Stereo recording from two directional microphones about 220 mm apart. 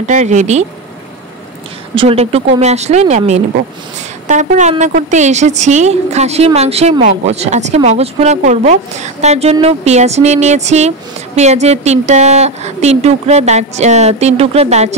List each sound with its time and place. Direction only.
0.0 s a woman's voice: 30° right (ahead or behind)
2.0 s a woman's voice: 25° right (ahead or behind)